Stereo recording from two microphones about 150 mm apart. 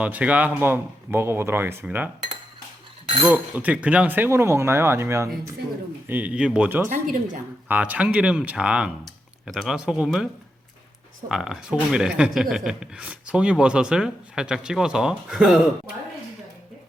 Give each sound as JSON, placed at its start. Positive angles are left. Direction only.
{"t": 0.0, "sound": "speech", "side_deg": -10}
{"t": 3.2, "sound": "speech", "side_deg": -10}
{"t": 6.8, "sound": "speech", "side_deg": -65}
{"t": 7.7, "sound": "speech", "side_deg": -10}
{"t": 11.3, "sound": "speech", "side_deg": -5}